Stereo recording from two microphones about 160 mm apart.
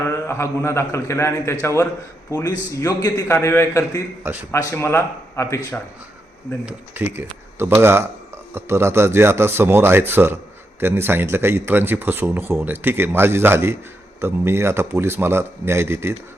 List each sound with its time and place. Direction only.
0.0 s a man's voice: 15° left (ahead or behind)
4.2 s speech: 10° right (ahead or behind)
4.5 s speech: 15° left (ahead or behind)
6.7 s speech: 10° right (ahead or behind)